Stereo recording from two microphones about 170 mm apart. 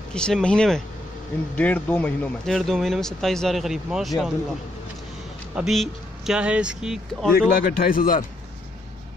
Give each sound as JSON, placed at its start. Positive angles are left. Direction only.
{"t": 0.1, "sound": "speech", "side_deg": 5}
{"t": 5.6, "sound": "speech", "side_deg": 0}
{"t": 7.3, "sound": "speech", "side_deg": 60}